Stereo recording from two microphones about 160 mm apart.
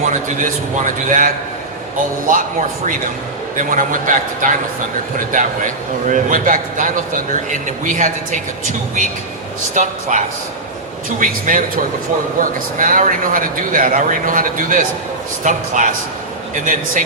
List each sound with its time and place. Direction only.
0.0 s a man's voice: 55° right (ahead or behind)